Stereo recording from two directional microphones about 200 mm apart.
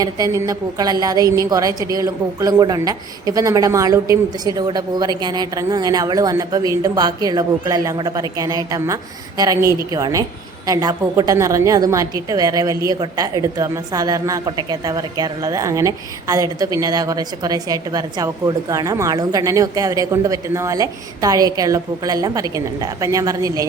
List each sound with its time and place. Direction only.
0.0 s a woman's voice: 15° right (ahead or behind)